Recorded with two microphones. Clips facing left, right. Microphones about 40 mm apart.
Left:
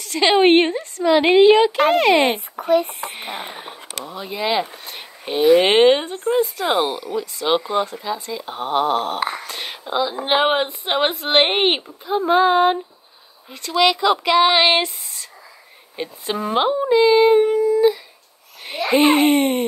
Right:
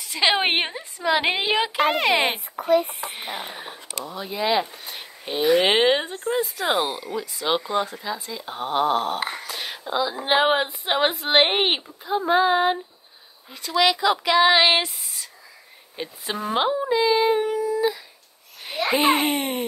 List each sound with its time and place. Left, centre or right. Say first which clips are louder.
0.0 s a woman's voice: left 6 dB; centre
2.6 s speech: left 2 dB; left
3.1 s speech: left 2 dB; centre
4.9 s a sound: left 5 dB; centre
5.4 s speech: left 5 dB; left
5.7 s a woman's voice: left 5 dB; centre
6.7 s a woman's voice: left 1 dB; left
7.4 s a woman's voice: left 4 dB; centre
14.1 s speech: left 2 dB; centre
16.0 s speech: left 4 dB; centre